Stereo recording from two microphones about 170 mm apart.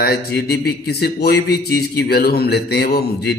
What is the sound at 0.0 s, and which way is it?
A man's voice, 65° left (ahead or behind).